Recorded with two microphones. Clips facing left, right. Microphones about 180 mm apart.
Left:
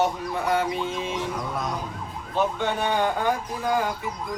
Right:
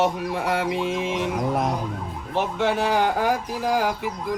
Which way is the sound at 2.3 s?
85° right.